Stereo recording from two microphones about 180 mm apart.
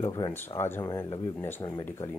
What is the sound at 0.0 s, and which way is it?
Speech, 20° left (ahead or behind).